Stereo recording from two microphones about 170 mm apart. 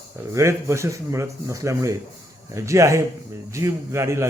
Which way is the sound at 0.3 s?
15° right (ahead or behind).